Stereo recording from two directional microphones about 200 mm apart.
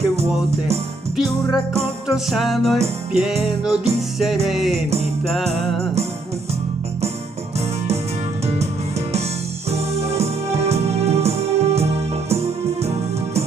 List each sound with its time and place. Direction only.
0.1 s music: 30° right (ahead or behind)
1.1 s music: centre (ahead or behind)
9.7 s music: 30° right (ahead or behind)